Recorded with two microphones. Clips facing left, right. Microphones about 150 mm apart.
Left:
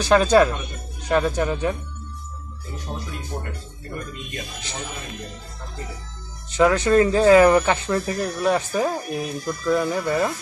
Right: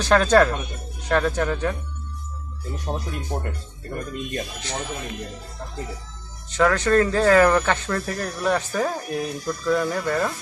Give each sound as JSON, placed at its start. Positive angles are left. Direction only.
{"t": 0.0, "sound": "speech", "side_deg": 5}
{"t": 2.9, "sound": "speech", "side_deg": -55}
{"t": 6.5, "sound": "speech", "side_deg": 15}